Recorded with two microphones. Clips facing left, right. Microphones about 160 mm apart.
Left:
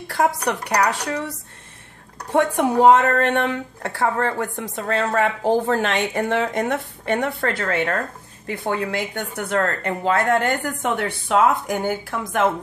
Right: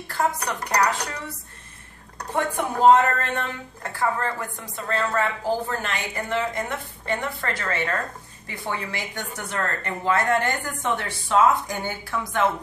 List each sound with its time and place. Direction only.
0.1 s speech: 80° left
2.3 s a woman's voice: 75° left (ahead or behind)
11.8 s speech: 45° left (ahead or behind)